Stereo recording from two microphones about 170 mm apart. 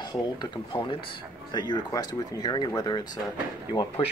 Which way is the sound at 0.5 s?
25° left (ahead or behind).